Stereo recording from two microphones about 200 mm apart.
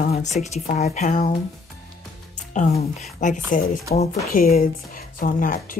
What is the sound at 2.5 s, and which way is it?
Speech, 35° left (ahead or behind).